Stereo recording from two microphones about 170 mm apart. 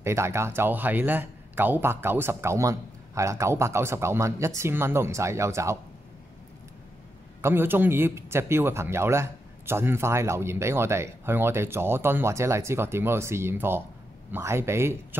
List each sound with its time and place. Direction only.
0.0 s a man's voice: 15° right (ahead or behind)
7.4 s a man's voice: 10° right (ahead or behind)